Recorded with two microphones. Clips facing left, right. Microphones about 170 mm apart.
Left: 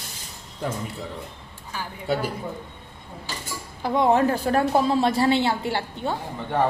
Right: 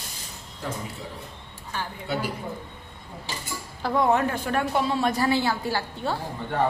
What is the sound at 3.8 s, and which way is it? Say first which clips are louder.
A woman's voice: left 3 dB; 25° left (ahead or behind).